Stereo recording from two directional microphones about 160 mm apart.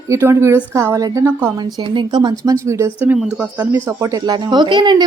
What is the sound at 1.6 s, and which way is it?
Speech, 25° right (ahead or behind).